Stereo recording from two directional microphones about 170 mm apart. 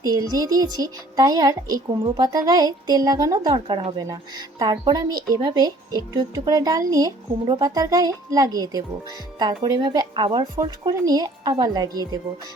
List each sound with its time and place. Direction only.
0.0 s speech: 25° right (ahead or behind)